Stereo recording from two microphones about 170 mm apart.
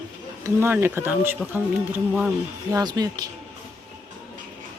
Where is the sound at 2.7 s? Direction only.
20° right (ahead or behind).